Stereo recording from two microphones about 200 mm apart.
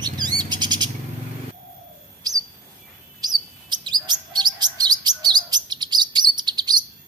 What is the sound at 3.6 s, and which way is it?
Chirp, 20° right (ahead or behind).